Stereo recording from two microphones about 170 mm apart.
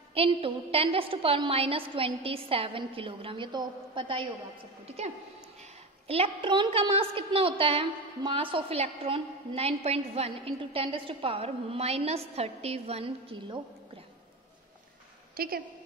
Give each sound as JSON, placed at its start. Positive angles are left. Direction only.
{"t": 0.1, "sound": "a woman's voice", "side_deg": -35}
{"t": 15.3, "sound": "a woman's voice", "side_deg": -60}